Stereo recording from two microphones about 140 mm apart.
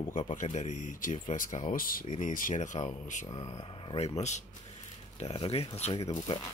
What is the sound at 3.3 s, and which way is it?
Speech, 30° left (ahead or behind).